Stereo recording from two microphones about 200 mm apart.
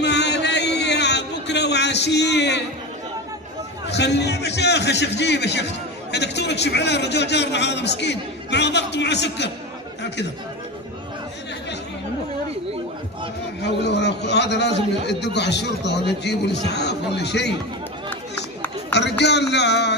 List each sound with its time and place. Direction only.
0.0 s a sound: 60° left (ahead or behind)
3.8 s a man's voice: 60° left (ahead or behind)
13.8 s a man's voice: 60° left (ahead or behind)
18.9 s a man's voice: 60° left (ahead or behind)